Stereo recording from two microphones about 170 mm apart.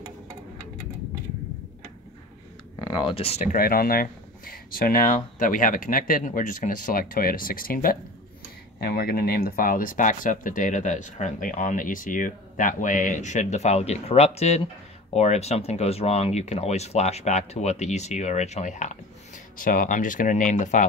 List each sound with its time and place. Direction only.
2.8 s speech: 30° left (ahead or behind)
3.5 s speech: 60° left (ahead or behind)
8.7 s speech: 70° left (ahead or behind); by 20.8 s 45° left (ahead or behind)